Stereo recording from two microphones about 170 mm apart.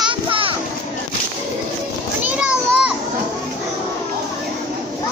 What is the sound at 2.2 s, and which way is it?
Children playing, 10° right (ahead or behind).